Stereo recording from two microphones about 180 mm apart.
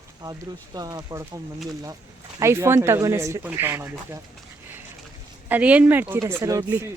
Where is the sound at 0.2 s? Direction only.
20° right (ahead or behind).